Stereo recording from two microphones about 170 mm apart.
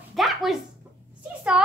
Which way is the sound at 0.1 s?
Centre (ahead or behind).